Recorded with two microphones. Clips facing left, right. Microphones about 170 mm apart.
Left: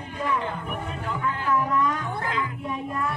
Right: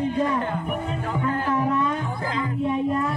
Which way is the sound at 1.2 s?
35° right (ahead or behind).